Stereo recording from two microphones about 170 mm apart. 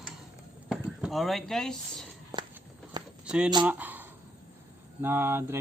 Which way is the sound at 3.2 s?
5° right (ahead or behind).